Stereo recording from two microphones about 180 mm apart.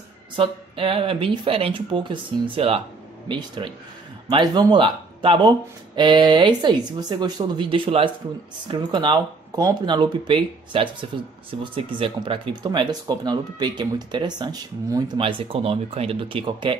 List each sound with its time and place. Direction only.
0.4 s speech: 30° right (ahead or behind)